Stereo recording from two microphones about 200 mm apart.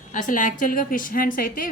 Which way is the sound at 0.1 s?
40° left (ahead or behind).